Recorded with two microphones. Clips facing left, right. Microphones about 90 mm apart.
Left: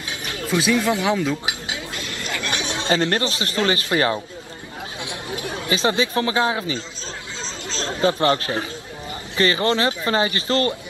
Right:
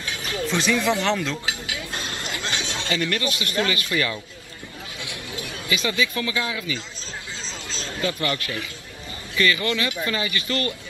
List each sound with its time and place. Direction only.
0.0 s music: 20° left (ahead or behind)
0.5 s speech: 10° left (ahead or behind)
2.2 s chatter: 20° right (ahead or behind)
2.5 s chatter: 20° left (ahead or behind)
2.9 s speech: 35° left (ahead or behind)
7.9 s speech: 35° left (ahead or behind)